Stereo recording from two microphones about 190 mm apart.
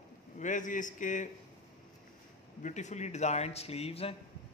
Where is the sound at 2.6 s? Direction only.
40° left (ahead or behind).